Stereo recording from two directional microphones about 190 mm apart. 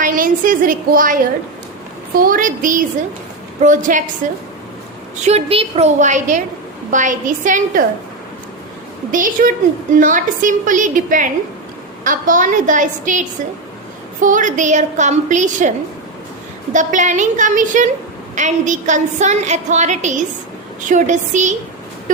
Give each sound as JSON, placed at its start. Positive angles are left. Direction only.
{"t": 0.0, "sound": "a woman's voice", "side_deg": -45}
{"t": 9.1, "sound": "a woman's voice", "side_deg": -45}
{"t": 16.7, "sound": "a woman's voice", "side_deg": -40}